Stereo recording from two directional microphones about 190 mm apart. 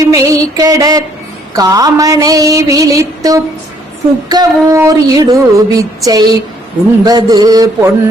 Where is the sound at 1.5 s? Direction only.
20° right (ahead or behind).